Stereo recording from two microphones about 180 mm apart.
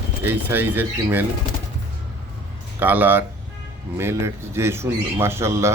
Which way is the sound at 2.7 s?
10° right (ahead or behind).